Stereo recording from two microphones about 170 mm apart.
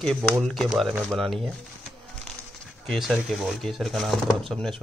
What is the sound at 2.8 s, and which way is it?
Speech, centre (ahead or behind).